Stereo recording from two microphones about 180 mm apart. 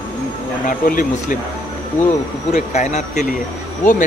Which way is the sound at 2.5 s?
40° left (ahead or behind).